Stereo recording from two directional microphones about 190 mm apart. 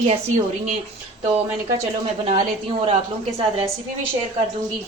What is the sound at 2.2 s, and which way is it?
Speech, 30° right (ahead or behind).